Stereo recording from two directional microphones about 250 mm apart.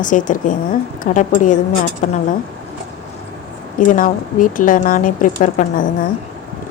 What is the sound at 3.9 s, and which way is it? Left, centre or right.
A woman's voice, left.